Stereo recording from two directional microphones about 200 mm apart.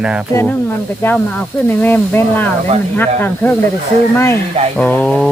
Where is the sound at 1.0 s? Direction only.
15° left (ahead or behind).